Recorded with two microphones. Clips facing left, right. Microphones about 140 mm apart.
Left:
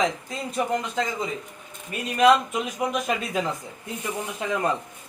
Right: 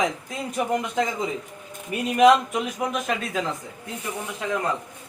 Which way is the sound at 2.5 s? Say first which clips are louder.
Even; 5° left (ahead or behind).